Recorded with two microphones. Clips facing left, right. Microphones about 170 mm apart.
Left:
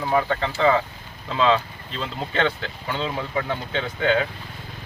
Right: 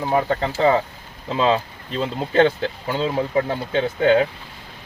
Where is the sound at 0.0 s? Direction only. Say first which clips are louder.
Right 2 dB; 30° right (ahead or behind).